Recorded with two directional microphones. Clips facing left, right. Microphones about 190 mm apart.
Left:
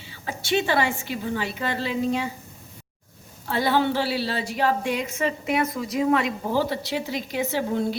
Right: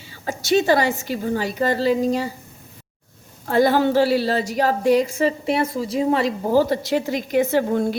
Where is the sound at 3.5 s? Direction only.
45° right (ahead or behind).